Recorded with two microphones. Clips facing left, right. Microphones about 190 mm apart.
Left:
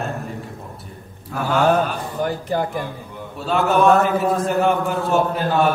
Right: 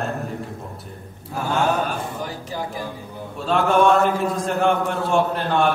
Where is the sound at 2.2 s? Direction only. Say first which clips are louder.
Left 7 dB; 55° left (ahead or behind).